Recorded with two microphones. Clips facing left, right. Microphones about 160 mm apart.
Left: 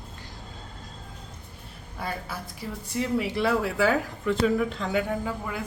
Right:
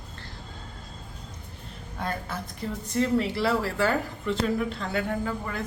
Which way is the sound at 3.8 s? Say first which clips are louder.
Left 2 dB; 5° left (ahead or behind).